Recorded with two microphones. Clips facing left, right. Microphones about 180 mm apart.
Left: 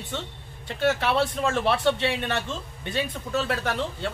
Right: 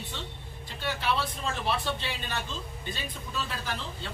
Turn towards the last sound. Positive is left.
turn(degrees=70)  # may be behind; listen again after turning